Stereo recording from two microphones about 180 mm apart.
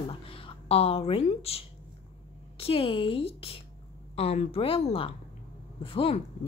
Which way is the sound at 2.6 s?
30° left (ahead or behind).